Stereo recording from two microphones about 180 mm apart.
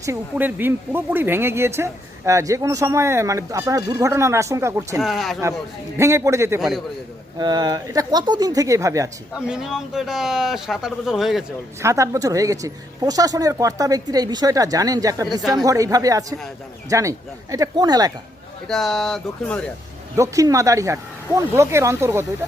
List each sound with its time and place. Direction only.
0.0 s speech: 15° right (ahead or behind)
4.9 s speech: centre (ahead or behind)
6.0 s speech: 15° right (ahead or behind)
6.6 s speech: centre (ahead or behind)
7.3 s speech: 25° right (ahead or behind)
9.5 s speech: 5° right (ahead or behind)
11.8 s speech: 15° right (ahead or behind)
15.3 s speech: centre (ahead or behind)
15.6 s speech: 20° right (ahead or behind)
18.7 s speech: centre (ahead or behind)
20.1 s speech: 15° right (ahead or behind)